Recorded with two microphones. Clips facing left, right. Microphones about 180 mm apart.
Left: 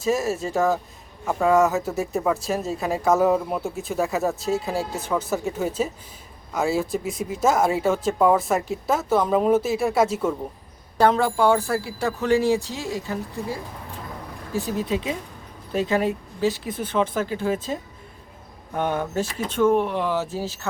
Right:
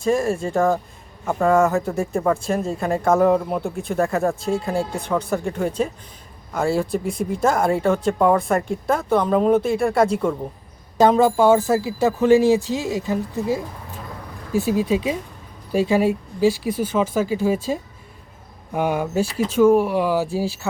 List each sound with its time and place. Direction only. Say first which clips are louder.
0.0 s speech: right 3 dB; 5° left (ahead or behind)
10.9 s speech: right 4 dB; 15° right (ahead or behind)
14.8 s a woman's voice: right 5 dB; 10° right (ahead or behind)
18.7 s speech: right 3 dB; 10° right (ahead or behind)